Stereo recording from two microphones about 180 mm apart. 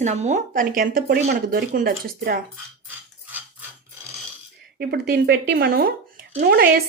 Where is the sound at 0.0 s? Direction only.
40° right (ahead or behind).